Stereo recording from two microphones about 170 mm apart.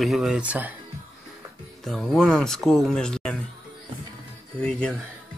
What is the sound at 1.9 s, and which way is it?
Speech, centre (ahead or behind).